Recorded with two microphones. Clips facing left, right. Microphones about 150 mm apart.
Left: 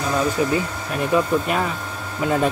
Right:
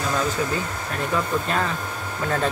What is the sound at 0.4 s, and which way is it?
Speech, 15° left (ahead or behind).